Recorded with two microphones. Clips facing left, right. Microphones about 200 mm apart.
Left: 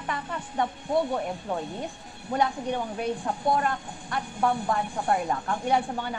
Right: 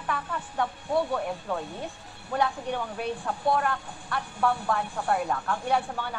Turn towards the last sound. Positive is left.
turn(degrees=20)  # may be behind; listen again after turning